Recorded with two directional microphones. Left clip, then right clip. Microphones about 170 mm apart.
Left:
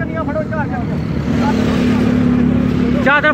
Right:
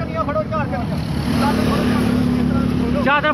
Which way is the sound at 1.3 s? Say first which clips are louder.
Left 2 dB; 50° right (ahead or behind).